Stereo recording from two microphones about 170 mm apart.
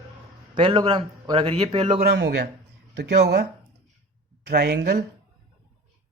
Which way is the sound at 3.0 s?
75° right (ahead or behind).